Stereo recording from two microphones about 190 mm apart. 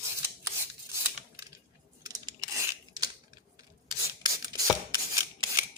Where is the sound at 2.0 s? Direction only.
20° right (ahead or behind).